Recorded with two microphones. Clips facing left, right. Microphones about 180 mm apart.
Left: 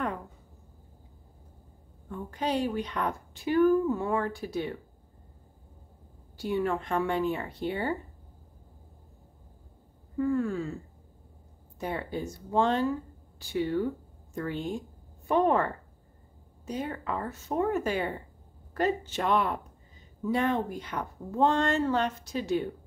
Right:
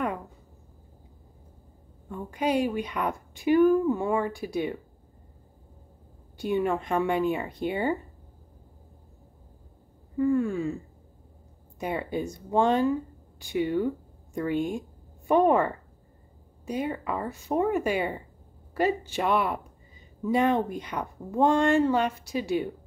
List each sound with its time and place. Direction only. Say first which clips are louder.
2.0 s a woman's voice: right 4 dB; 10° right (ahead or behind)
6.3 s a woman's voice: right 3 dB; 20° right (ahead or behind)
10.1 s a woman's voice: right 3 dB; 15° right (ahead or behind)
11.8 s a woman's voice: right 3 dB; 15° right (ahead or behind)